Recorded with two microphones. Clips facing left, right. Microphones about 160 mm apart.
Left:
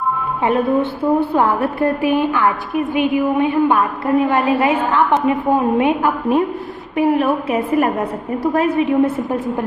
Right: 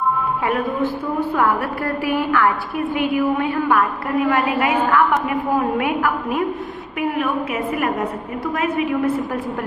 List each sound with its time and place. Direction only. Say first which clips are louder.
0.4 s a woman's voice: left 5 dB; 25° left (ahead or behind)